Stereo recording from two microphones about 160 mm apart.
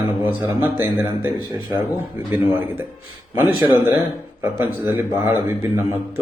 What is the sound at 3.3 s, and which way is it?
Speech, 15° right (ahead or behind).